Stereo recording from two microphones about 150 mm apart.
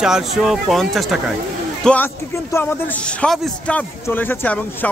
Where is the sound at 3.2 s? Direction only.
10° left (ahead or behind).